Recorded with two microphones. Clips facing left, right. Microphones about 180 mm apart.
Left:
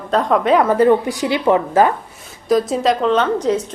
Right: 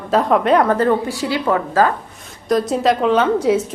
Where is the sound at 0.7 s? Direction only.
15° left (ahead or behind).